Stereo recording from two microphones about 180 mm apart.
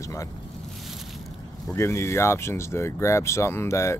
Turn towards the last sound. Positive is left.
turn(degrees=15)  # may be behind; listen again after turning